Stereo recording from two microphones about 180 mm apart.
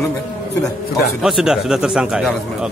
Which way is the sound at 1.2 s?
5° right (ahead or behind).